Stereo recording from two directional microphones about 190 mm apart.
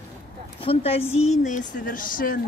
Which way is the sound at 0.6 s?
30° left (ahead or behind).